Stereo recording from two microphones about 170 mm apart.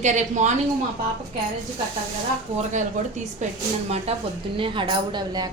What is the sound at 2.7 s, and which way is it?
A woman's voice, 45° right (ahead or behind).